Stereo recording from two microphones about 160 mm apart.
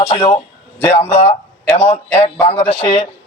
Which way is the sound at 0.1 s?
40° left (ahead or behind).